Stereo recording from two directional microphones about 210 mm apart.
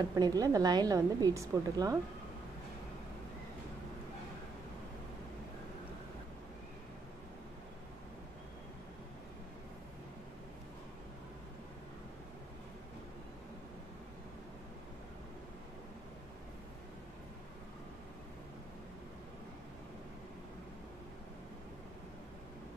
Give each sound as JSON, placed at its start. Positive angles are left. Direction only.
{"t": 0.1, "sound": "a woman's voice", "side_deg": -15}